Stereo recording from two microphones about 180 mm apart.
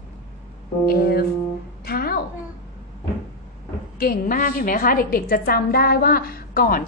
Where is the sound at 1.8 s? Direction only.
55° left (ahead or behind).